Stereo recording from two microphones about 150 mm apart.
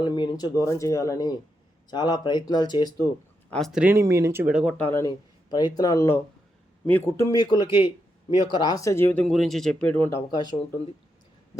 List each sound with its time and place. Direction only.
0.0 s speech: 30° left (ahead or behind)
3.5 s speech: centre (ahead or behind)
3.9 s speech: 20° right (ahead or behind)
4.8 s a man's voice: 15° left (ahead or behind)